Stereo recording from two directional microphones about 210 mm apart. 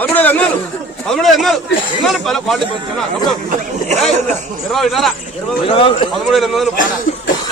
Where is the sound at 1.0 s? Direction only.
Centre (ahead or behind).